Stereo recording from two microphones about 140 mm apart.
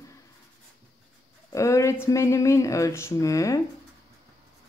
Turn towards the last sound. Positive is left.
turn(degrees=25)  # may be behind; listen again after turning